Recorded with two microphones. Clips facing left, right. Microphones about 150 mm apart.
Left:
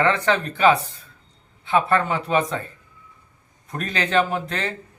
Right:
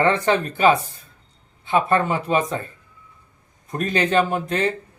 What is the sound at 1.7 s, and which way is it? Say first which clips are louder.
Speech: right 1 dB; 20° right (ahead or behind).